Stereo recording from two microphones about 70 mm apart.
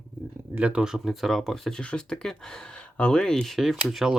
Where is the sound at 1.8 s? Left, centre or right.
Centre.